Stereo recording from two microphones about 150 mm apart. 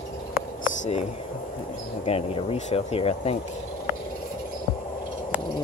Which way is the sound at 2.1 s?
45° left (ahead or behind).